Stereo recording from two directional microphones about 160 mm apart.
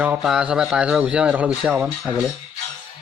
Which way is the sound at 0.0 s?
5° right (ahead or behind).